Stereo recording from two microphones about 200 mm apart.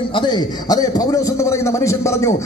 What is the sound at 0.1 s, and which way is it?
A man's voice, 20° left (ahead or behind).